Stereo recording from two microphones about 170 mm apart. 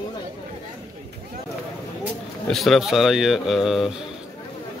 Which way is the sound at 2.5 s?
Centre (ahead or behind).